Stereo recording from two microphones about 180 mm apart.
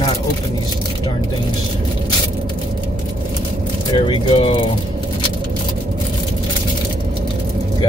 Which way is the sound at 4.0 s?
30° left (ahead or behind).